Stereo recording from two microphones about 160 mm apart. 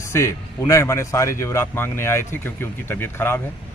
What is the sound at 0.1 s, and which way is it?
Speech, 15° left (ahead or behind).